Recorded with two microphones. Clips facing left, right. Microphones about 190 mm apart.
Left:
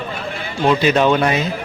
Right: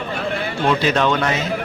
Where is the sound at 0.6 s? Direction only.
10° left (ahead or behind).